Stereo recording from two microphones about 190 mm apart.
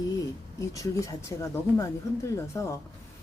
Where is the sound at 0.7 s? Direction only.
15° left (ahead or behind).